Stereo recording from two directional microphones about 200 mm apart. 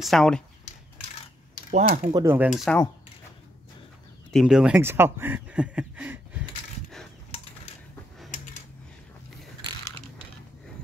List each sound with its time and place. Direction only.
0.0 s speech: centre (ahead or behind)
1.7 s speech: 35° right (ahead or behind)
2.1 s speech: 10° right (ahead or behind)
4.3 s speech: centre (ahead or behind)
7.2 s a sound: 30° left (ahead or behind)